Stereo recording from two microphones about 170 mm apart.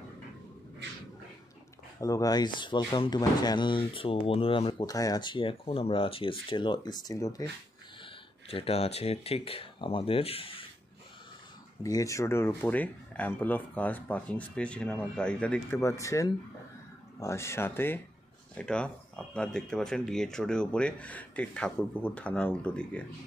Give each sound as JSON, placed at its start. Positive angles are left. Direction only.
{"t": 2.0, "sound": "speech", "side_deg": 20}
{"t": 8.0, "sound": "speech", "side_deg": 35}
{"t": 11.8, "sound": "speech", "side_deg": 20}
{"t": 15.8, "sound": "speech", "side_deg": 20}